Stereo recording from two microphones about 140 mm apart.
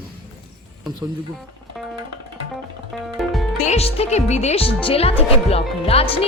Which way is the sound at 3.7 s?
50° left (ahead or behind).